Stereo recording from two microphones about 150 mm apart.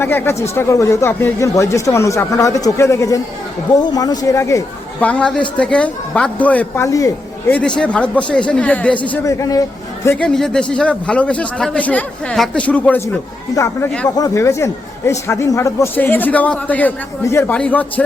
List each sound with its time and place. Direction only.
0.0 s a man's voice: 15° left (ahead or behind)
7.5 s a man's voice: 5° left (ahead or behind)
9.1 s a man's voice: 20° left (ahead or behind)
10.2 s a man's voice: 5° left (ahead or behind)
13.5 s a man's voice: 25° left (ahead or behind)